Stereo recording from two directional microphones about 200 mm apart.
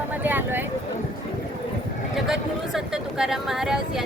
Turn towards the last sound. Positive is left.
turn(degrees=-5)  # may be behind; listen again after turning